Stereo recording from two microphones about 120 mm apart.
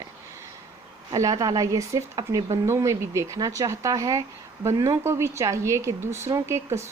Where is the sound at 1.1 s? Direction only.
30° right (ahead or behind).